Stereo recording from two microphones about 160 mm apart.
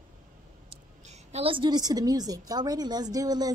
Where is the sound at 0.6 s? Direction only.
45° right (ahead or behind).